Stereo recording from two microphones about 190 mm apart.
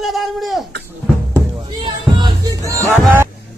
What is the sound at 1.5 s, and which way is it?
Music, 25° right (ahead or behind).